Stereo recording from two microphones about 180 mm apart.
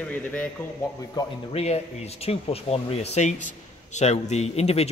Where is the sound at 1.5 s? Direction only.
35° left (ahead or behind).